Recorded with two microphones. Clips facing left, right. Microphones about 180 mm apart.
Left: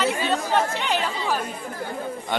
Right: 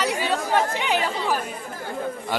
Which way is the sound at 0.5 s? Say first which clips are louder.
Right 1 dB; 10° right (ahead or behind).